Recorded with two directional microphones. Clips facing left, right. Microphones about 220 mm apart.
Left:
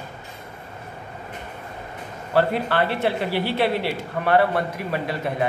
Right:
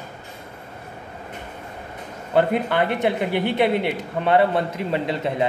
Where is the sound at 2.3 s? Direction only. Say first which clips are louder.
Right 1 dB; 20° right (ahead or behind).